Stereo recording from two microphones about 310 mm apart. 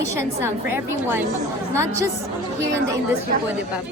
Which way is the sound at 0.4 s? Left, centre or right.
Centre.